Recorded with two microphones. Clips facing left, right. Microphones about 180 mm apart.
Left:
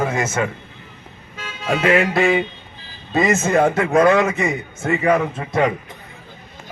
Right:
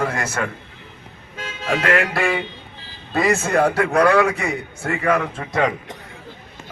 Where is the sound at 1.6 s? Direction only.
5° left (ahead or behind).